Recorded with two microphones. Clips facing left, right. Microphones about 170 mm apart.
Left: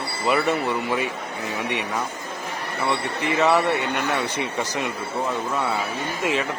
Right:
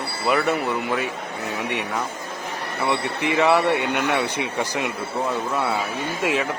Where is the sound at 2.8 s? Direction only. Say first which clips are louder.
Right 1 dB; 15° right (ahead or behind).